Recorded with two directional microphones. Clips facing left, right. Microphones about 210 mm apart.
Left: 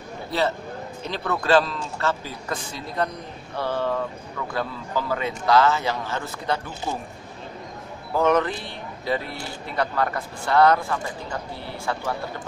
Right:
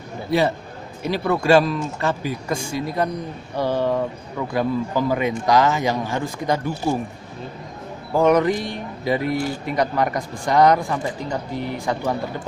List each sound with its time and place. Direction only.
0.3 s speech: 15° right (ahead or behind)
8.1 s speech: 10° right (ahead or behind)